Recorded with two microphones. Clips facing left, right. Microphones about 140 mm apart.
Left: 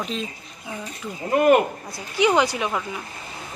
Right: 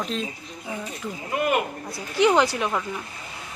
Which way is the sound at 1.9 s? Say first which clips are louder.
Even; centre (ahead or behind).